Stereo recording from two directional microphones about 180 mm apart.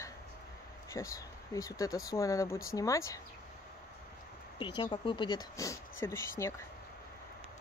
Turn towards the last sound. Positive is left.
turn(degrees=15)  # may be behind; listen again after turning